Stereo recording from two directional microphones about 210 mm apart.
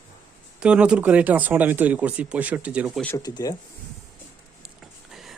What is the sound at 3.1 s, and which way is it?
Speech, 15° left (ahead or behind).